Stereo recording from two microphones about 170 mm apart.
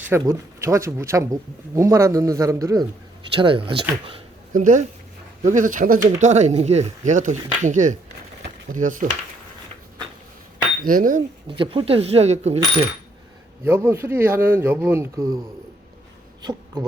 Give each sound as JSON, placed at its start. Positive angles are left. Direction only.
{"t": 0.0, "sound": "speech", "side_deg": -15}
{"t": 3.3, "sound": "speech", "side_deg": -30}
{"t": 4.5, "sound": "speech", "side_deg": -50}
{"t": 6.1, "sound": "speech", "side_deg": -45}
{"t": 10.8, "sound": "speech", "side_deg": -55}
{"t": 11.4, "sound": "speech", "side_deg": -30}
{"t": 13.7, "sound": "speech", "side_deg": -15}
{"t": 16.4, "sound": "speech", "side_deg": -25}